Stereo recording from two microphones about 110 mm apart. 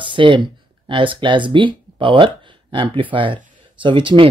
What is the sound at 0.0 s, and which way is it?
Speech, 50° right (ahead or behind).